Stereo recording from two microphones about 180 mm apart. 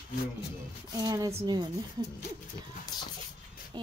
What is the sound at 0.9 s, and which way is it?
A woman's voice, 20° right (ahead or behind).